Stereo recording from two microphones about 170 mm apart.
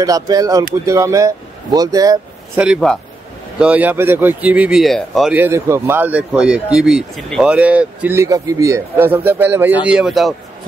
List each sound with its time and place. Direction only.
0.0 s speech: 20° right (ahead or behind)
2.6 s a man's voice: centre (ahead or behind)
5.3 s speech: 15° right (ahead or behind)